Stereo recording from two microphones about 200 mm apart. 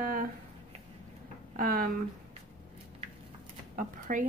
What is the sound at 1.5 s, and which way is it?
Speech, 50° right (ahead or behind).